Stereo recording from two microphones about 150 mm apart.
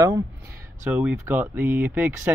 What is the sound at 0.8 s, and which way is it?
Speech, 10° right (ahead or behind).